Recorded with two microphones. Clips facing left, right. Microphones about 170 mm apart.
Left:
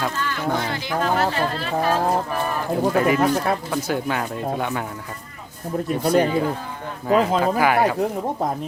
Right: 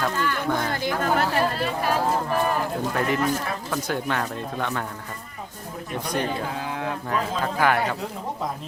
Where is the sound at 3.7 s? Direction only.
5° left (ahead or behind).